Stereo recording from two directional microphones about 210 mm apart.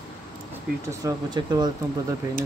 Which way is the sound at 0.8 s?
15° right (ahead or behind).